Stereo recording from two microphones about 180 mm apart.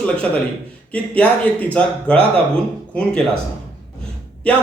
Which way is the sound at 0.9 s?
5° left (ahead or behind).